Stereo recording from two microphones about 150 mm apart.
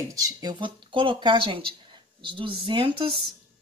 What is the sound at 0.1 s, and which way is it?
Speech, 25° right (ahead or behind).